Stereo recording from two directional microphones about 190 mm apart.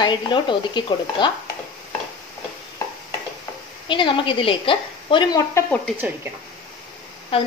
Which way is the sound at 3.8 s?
25° left (ahead or behind).